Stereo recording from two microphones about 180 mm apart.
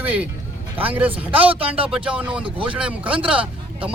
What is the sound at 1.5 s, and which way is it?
Speech, 30° right (ahead or behind).